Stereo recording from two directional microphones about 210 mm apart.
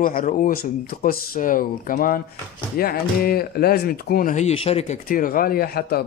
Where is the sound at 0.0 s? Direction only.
40° left (ahead or behind).